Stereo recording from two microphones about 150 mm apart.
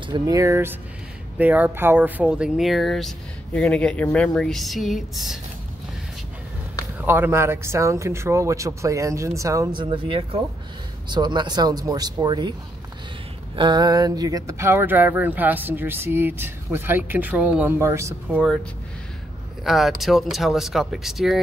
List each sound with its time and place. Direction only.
0.0 s speech: 25° right (ahead or behind); by 5.4 s centre (ahead or behind)
7.0 s speech: 15° right (ahead or behind)
13.6 s speech: 30° right (ahead or behind)
19.6 s speech: centre (ahead or behind)